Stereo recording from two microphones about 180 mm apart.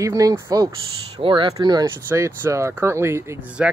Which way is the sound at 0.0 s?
20° right (ahead or behind).